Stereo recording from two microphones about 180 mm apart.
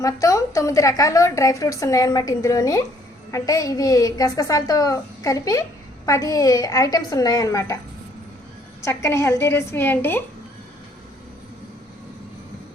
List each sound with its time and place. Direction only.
0.0 s a woman's voice: 20° left (ahead or behind)
8.8 s a woman's voice: 15° left (ahead or behind)